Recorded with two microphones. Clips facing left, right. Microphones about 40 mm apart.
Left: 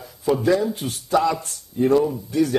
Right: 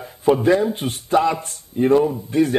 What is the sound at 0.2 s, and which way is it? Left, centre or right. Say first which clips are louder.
A man's voice: right 3 dB; right.